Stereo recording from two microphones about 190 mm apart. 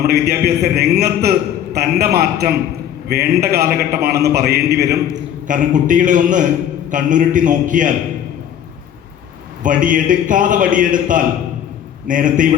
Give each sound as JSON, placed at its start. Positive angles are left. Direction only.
{"t": 0.1, "sound": "a man's voice", "side_deg": -60}
{"t": 5.5, "sound": "a man's voice", "side_deg": -45}
{"t": 9.6, "sound": "a man's voice", "side_deg": -45}